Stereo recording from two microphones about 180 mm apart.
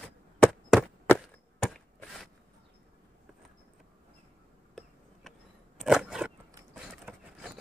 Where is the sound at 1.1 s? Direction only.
10° left (ahead or behind).